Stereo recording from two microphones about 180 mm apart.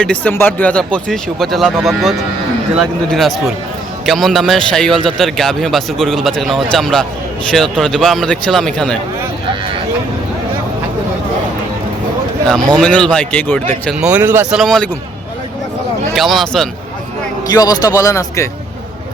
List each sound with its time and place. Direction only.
0.0 s a man's voice: 10° left (ahead or behind)
12.7 s a man's voice: 5° left (ahead or behind)
14.0 s a man's voice: 10° right (ahead or behind)
14.6 s a man's voice: 5° left (ahead or behind)
16.1 s a man's voice: centre (ahead or behind)
17.5 s speech: 20° left (ahead or behind)